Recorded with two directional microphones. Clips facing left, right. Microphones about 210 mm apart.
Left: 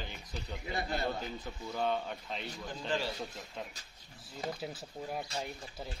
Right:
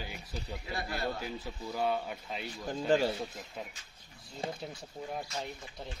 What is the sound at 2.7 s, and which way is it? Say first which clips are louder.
Speech: right 8 dB; 45° right (ahead or behind).